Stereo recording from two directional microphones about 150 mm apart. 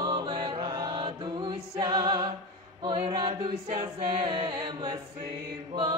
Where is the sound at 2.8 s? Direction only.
35° right (ahead or behind).